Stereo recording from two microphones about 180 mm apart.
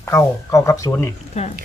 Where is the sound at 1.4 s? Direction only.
35° left (ahead or behind).